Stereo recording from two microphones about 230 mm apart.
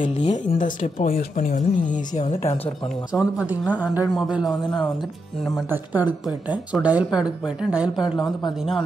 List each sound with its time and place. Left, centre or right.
0.0 s speech: left
0.5 s a woman's voice: left
3.1 s a woman's voice: centre